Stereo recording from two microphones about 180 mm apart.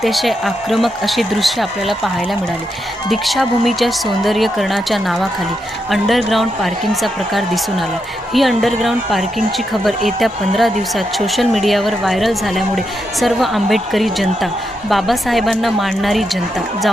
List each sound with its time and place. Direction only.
0.0 s speech: centre (ahead or behind)
3.1 s speech: centre (ahead or behind)